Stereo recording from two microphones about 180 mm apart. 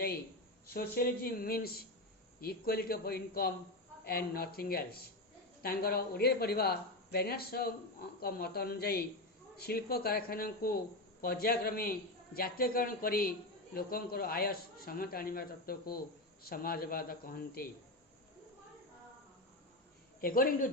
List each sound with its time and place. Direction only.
0.7 s a man's voice: 55° left (ahead or behind)
20.2 s speech: 55° left (ahead or behind)